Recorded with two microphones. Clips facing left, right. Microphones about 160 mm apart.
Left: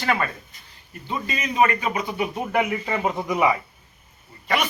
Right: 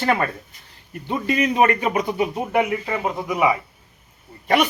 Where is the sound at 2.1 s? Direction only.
20° right (ahead or behind).